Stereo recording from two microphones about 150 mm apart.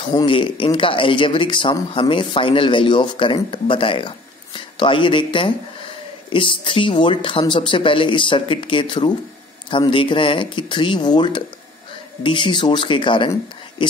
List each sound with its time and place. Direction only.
0.0 s speech: 30° left (ahead or behind)